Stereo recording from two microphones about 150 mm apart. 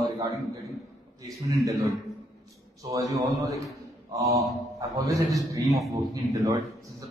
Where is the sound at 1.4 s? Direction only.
20° right (ahead or behind).